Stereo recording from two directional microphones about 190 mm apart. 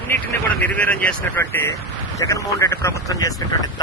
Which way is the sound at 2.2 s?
15° left (ahead or behind).